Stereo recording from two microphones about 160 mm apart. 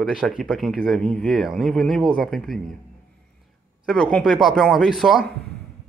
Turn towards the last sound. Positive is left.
turn(degrees=0)  # may be behind; listen again after turning